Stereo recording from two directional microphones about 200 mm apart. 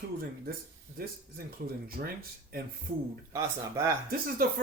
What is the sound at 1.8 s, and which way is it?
Speech, 50° right (ahead or behind).